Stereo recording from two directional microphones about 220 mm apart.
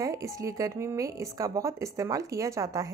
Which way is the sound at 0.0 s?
15° right (ahead or behind).